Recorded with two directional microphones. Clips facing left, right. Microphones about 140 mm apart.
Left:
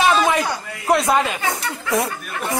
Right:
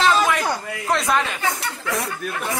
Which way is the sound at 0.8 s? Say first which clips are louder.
Left 4 dB; 20° left (ahead or behind).